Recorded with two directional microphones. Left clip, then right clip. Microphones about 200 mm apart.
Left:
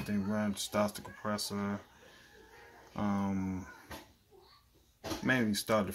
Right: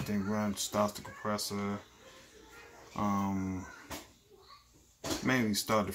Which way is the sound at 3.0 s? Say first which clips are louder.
Right 3 dB; 15° left (ahead or behind).